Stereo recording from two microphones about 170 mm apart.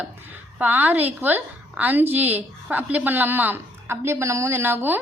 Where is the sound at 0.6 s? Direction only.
10° right (ahead or behind).